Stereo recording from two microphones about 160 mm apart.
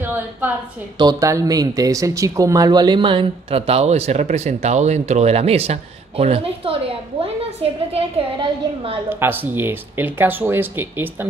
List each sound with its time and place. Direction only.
0.0 s a sound: 10° right (ahead or behind)
0.9 s speech: 25° right (ahead or behind)
9.2 s speech: 10° right (ahead or behind)